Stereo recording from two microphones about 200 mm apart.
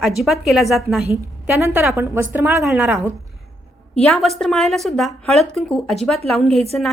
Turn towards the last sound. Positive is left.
turn(degrees=-30)  # may be behind; listen again after turning